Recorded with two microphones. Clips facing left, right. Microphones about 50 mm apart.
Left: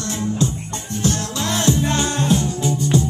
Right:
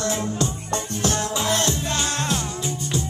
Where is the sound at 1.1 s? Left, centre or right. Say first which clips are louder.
Left 2 dB; right.